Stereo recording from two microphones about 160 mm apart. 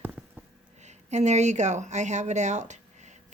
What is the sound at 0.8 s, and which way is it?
Speech, 45° right (ahead or behind).